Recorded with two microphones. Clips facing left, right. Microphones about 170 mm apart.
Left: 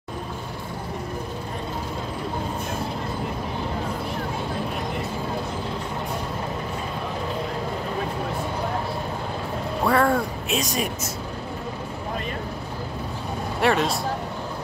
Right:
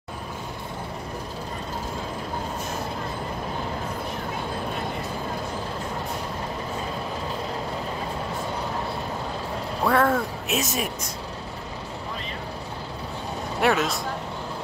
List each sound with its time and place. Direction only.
9.8 s speech: centre (ahead or behind)
13.6 s speech: centre (ahead or behind)